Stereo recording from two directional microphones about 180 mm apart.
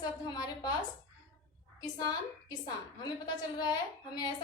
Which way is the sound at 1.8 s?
20° left (ahead or behind).